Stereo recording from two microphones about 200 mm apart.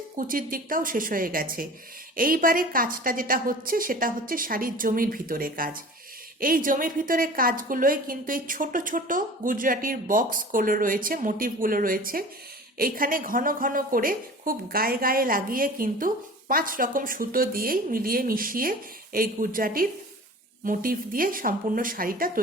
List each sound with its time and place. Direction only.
0.2 s a woman's voice: 45° right (ahead or behind)